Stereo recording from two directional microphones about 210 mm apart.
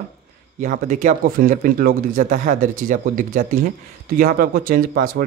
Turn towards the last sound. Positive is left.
turn(degrees=-45)  # may be behind; listen again after turning